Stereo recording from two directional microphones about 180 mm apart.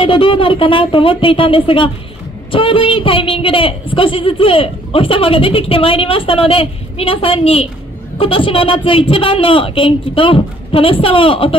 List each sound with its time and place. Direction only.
0.0 s a woman's voice: 30° left (ahead or behind)